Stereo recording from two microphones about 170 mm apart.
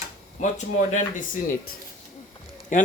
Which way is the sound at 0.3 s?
45° left (ahead or behind).